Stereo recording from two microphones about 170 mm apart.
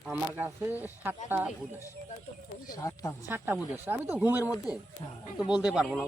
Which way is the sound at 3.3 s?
10° right (ahead or behind).